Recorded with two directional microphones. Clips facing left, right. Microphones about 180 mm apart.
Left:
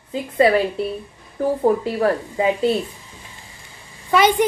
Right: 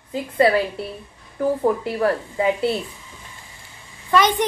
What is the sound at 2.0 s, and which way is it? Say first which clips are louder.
Speech: left 1 dB; 20° left (ahead or behind).